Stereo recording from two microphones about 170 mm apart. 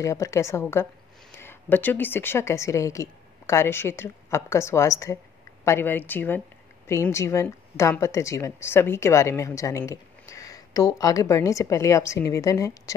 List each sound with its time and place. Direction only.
0.0 s speech: 20° left (ahead or behind)